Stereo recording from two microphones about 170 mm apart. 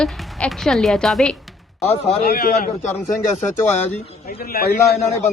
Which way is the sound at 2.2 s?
65° left (ahead or behind).